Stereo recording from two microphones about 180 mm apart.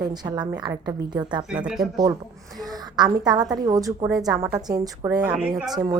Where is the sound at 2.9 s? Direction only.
25° right (ahead or behind).